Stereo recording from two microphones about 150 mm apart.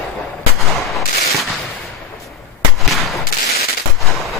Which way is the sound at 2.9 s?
Centre (ahead or behind).